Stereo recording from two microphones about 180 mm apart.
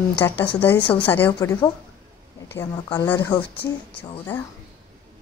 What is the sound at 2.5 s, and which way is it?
Speech, 20° left (ahead or behind).